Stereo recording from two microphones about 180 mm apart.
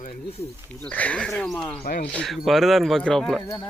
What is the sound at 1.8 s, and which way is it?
Speech, 60° left (ahead or behind).